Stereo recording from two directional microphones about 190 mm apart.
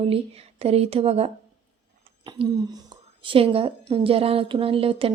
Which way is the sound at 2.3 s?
20° right (ahead or behind).